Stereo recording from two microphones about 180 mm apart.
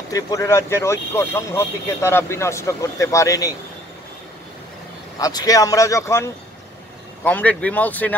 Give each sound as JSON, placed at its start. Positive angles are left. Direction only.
{"t": 0.1, "sound": "speech", "side_deg": 15}
{"t": 5.2, "sound": "speech", "side_deg": 20}